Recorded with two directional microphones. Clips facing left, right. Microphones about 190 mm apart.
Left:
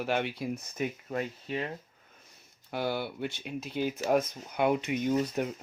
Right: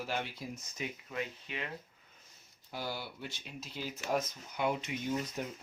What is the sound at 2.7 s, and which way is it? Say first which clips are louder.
Speech: left 8 dB; 60° left (ahead or behind).